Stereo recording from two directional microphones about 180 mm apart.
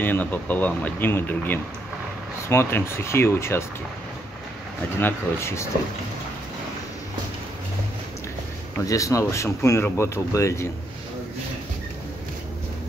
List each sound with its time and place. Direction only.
0.0 s speech: 10° left (ahead or behind)
4.9 s speech: 15° left (ahead or behind)
8.8 s speech: 20° left (ahead or behind)